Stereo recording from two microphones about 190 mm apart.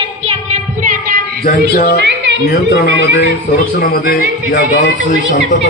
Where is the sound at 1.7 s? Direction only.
50° left (ahead or behind).